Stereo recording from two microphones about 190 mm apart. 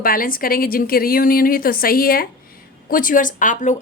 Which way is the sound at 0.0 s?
50° left (ahead or behind).